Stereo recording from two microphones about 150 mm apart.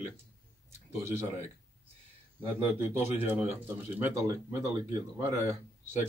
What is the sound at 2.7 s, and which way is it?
Speech, 15° right (ahead or behind).